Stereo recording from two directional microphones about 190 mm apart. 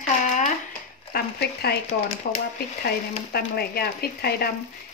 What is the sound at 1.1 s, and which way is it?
Speech, 55° left (ahead or behind).